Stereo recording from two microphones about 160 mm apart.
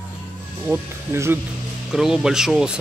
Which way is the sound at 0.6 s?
15° right (ahead or behind).